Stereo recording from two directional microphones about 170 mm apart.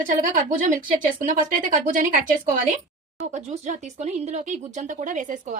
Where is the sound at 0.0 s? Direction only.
50° right (ahead or behind).